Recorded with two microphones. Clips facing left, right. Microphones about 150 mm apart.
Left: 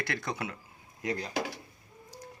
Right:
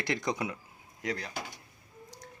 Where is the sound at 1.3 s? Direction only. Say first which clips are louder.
Left 7 dB; 85° left.